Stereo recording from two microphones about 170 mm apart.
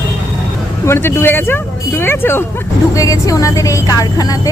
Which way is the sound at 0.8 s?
15° left (ahead or behind).